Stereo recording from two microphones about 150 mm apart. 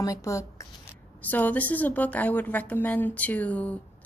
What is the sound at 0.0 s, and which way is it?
A woman's voice, 20° left (ahead or behind).